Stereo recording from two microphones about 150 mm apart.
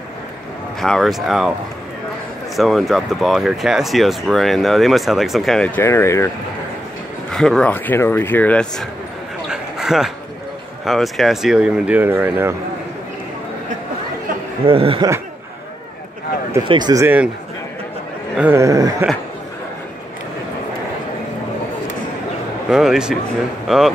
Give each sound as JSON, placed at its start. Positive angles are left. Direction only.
{"t": 0.7, "sound": "speech", "side_deg": 0}
{"t": 2.5, "sound": "speech", "side_deg": 0}
{"t": 5.8, "sound": "speech", "side_deg": 15}
{"t": 7.2, "sound": "speech", "side_deg": 5}
{"t": 9.5, "sound": "a sound", "side_deg": -5}
{"t": 10.9, "sound": "speech", "side_deg": 0}
{"t": 14.7, "sound": "speech", "side_deg": -35}
{"t": 16.6, "sound": "a sound", "side_deg": -30}
{"t": 17.0, "sound": "speech", "side_deg": -10}
{"t": 18.4, "sound": "a sound", "side_deg": -15}
{"t": 22.7, "sound": "speech", "side_deg": -5}